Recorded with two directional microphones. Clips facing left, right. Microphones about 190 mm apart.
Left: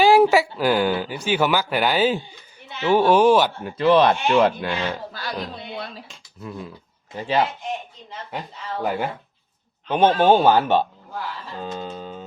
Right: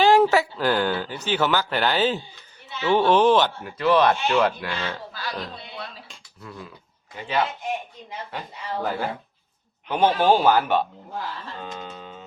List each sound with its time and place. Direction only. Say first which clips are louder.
0.0 s speech: left 2 dB; 10° left (ahead or behind)
3.6 s speech: left 3 dB; 25° left (ahead or behind)
6.4 s speech: left 6 dB; 20° left (ahead or behind)
7.2 s a sound: left 4 dB; 30° left (ahead or behind)
8.8 s speech: left 3 dB; 15° left (ahead or behind)
11.5 s a sound: left 5 dB; 35° left (ahead or behind)